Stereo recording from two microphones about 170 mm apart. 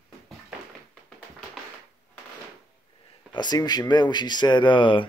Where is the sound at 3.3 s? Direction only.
25° left (ahead or behind).